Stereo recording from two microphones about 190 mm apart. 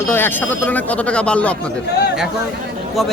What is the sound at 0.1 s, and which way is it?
Speech, 10° left (ahead or behind).